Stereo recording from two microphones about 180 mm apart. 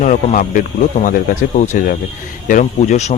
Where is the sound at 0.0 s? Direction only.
45° left (ahead or behind).